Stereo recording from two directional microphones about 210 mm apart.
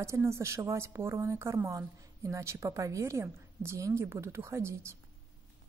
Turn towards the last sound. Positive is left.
turn(degrees=-15)  # may be behind; listen again after turning